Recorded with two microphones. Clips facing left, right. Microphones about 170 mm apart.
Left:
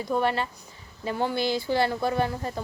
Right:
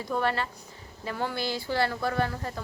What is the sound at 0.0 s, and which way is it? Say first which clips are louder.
Speech: left 3 dB; 15° left (ahead or behind).